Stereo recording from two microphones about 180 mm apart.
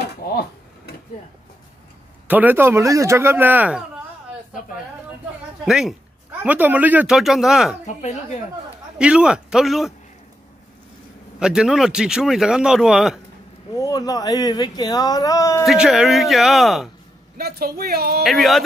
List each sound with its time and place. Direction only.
0.0 s drawer open or close: 60° left (ahead or behind)
2.2 s speech: 10° right (ahead or behind)
5.7 s speech: centre (ahead or behind)
8.9 s speech: 5° right (ahead or behind)
11.3 s speech: 5° right (ahead or behind)
13.7 s speech: 20° left (ahead or behind)
15.6 s speech: centre (ahead or behind)
17.4 s speech: 60° right (ahead or behind)
18.2 s speech: centre (ahead or behind)